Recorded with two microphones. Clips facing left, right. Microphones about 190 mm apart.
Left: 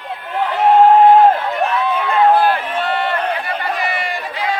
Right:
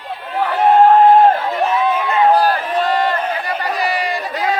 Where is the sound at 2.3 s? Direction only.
40° right (ahead or behind).